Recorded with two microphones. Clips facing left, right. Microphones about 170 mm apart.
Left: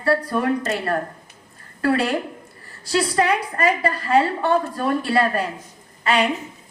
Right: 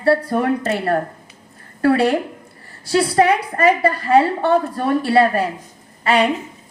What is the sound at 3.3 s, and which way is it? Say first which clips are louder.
A woman's voice: right 5 dB; 30° right (ahead or behind).